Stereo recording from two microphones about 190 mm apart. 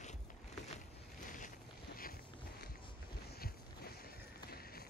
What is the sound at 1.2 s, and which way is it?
Boat, 45° left (ahead or behind).